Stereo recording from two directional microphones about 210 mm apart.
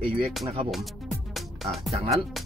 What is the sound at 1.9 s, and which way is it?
Speech, 30° right (ahead or behind).